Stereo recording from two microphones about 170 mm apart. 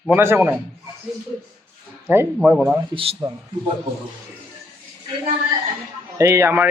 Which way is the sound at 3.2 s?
25° right (ahead or behind).